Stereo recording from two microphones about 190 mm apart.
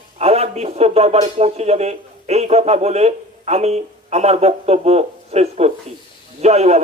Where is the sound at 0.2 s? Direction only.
35° right (ahead or behind).